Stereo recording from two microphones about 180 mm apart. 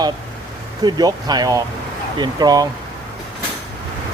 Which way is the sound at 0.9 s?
20° right (ahead or behind).